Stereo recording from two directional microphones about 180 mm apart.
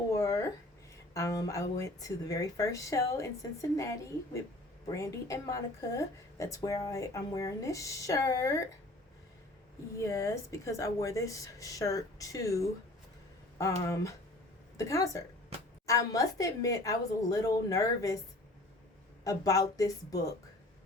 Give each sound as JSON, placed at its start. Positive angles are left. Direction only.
{"t": 0.1, "sound": "a sound", "side_deg": 15}
{"t": 1.1, "sound": "speech", "side_deg": 20}
{"t": 10.0, "sound": "speech", "side_deg": 15}
{"t": 19.2, "sound": "speech", "side_deg": 20}